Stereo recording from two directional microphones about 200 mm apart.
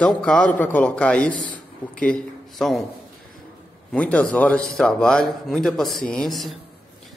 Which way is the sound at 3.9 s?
5° left (ahead or behind).